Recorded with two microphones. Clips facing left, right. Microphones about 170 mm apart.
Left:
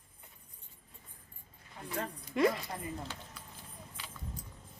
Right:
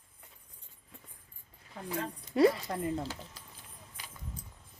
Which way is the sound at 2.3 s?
30° right (ahead or behind).